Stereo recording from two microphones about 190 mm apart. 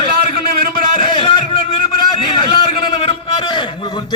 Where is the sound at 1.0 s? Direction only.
25° left (ahead or behind).